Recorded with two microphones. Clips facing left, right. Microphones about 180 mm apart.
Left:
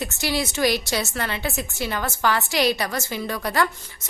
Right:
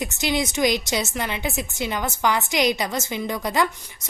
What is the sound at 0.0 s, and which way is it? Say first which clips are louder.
A woman's voice: right 1 dB; 20° right (ahead or behind).